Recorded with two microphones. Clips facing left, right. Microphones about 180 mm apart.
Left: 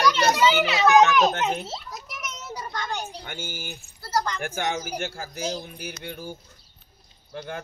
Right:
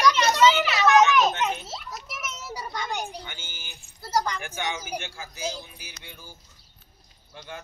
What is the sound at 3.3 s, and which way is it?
Speech, 55° left (ahead or behind).